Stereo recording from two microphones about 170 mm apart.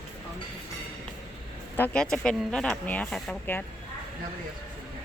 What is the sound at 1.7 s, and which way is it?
Speech, 10° left (ahead or behind).